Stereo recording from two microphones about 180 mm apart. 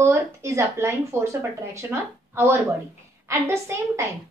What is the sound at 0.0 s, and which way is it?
A woman's voice, 15° right (ahead or behind).